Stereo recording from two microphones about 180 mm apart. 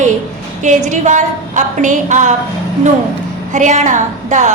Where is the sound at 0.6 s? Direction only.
40° right (ahead or behind).